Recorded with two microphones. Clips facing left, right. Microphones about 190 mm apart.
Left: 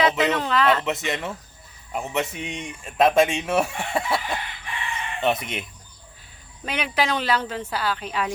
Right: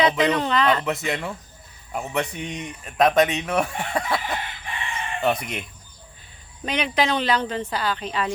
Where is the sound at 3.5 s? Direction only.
5° left (ahead or behind).